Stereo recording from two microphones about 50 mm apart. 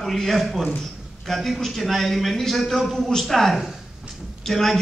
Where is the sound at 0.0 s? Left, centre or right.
Centre.